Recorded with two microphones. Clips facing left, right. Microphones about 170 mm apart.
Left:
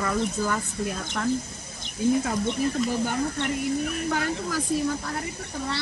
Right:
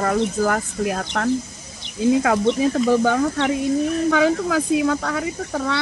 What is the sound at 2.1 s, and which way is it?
Speech, 80° right.